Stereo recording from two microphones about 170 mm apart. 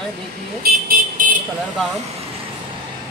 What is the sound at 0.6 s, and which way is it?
Vehicle, 60° right (ahead or behind).